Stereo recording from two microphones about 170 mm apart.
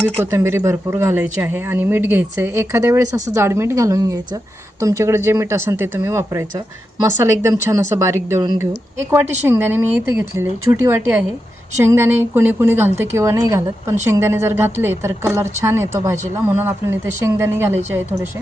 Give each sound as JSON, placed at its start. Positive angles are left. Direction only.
{"t": 0.2, "sound": "a woman's voice", "side_deg": -15}